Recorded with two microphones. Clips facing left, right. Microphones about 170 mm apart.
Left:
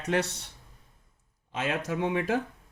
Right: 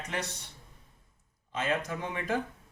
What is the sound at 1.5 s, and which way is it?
Speech, 75° left (ahead or behind).